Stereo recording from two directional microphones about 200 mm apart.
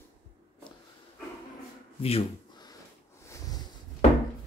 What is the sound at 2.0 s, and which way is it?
Speech, 30° left (ahead or behind).